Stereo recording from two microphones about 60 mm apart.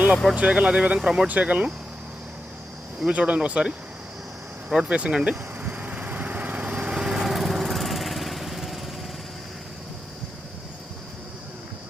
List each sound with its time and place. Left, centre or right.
0.3 s speech: centre
1.3 s speech: right
3.1 s speech: right
5.3 s vehicle: right; by 8.8 s centre